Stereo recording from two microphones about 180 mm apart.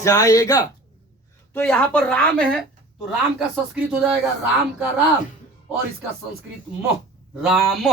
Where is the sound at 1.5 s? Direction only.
5° left (ahead or behind).